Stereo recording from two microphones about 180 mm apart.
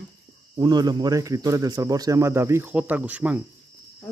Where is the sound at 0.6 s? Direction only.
25° right (ahead or behind); by 3.4 s 10° right (ahead or behind).